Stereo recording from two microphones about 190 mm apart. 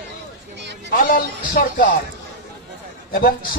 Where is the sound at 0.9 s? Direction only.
50° left (ahead or behind).